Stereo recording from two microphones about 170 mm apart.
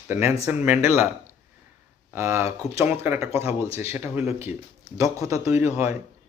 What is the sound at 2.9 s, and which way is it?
Speech, 10° right (ahead or behind).